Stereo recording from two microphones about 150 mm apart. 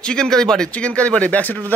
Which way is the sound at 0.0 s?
5° left (ahead or behind).